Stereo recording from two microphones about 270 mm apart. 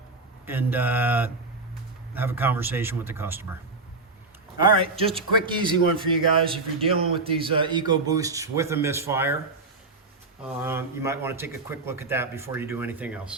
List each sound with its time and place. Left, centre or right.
0.4 s a man's voice: centre
4.5 s a man's voice: centre
10.6 s a man's voice: centre